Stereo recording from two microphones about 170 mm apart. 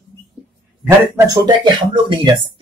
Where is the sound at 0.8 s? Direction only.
25° right (ahead or behind).